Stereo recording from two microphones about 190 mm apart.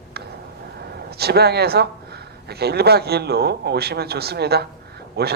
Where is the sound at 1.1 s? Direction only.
55° right (ahead or behind).